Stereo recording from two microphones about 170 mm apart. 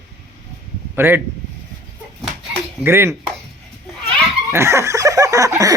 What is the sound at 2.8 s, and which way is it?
Dishes, 15° right (ahead or behind).